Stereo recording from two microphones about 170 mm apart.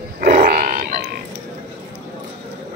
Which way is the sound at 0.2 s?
55° right (ahead or behind).